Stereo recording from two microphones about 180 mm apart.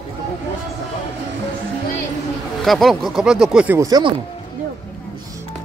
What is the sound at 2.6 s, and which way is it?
Speech, centre (ahead or behind).